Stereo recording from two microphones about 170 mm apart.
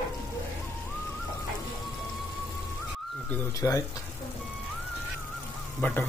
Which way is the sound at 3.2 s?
15° left (ahead or behind).